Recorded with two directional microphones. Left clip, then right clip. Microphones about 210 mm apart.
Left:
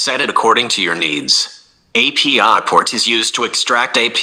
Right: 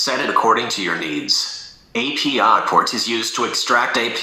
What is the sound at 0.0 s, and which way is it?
Speech, 35° left (ahead or behind).